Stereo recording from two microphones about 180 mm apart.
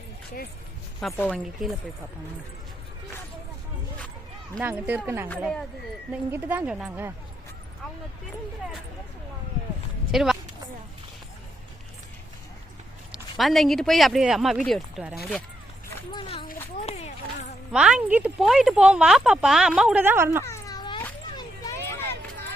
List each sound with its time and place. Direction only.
1.1 s speech: 10° left (ahead or behind)
4.6 s a woman's voice: 10° right (ahead or behind)
5.4 s speech: 5° left (ahead or behind)
6.3 s a woman's voice: 10° right (ahead or behind)
10.1 s a woman's voice: 5° right (ahead or behind)
13.3 s speech: centre (ahead or behind)
16.1 s a sound: 30° left (ahead or behind)
16.8 s run: 35° left (ahead or behind)
17.7 s speech: 5° right (ahead or behind)
20.4 s a sound: 15° left (ahead or behind)